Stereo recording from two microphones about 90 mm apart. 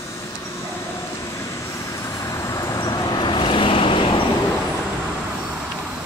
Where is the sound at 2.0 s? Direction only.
35° left (ahead or behind); by 4.2 s 80° left.